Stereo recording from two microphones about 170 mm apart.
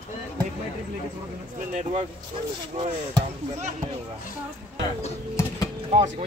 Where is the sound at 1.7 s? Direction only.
45° right (ahead or behind).